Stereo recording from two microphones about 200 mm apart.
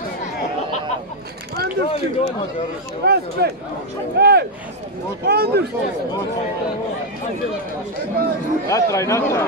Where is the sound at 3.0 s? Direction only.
50° right (ahead or behind).